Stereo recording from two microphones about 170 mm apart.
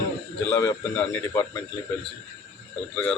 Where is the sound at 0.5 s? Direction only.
15° left (ahead or behind).